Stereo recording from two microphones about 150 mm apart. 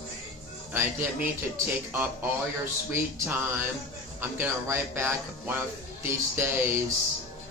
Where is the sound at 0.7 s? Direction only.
15° right (ahead or behind).